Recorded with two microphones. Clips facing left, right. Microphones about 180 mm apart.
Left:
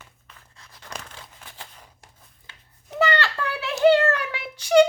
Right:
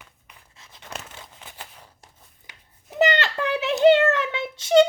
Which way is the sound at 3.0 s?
20° right (ahead or behind).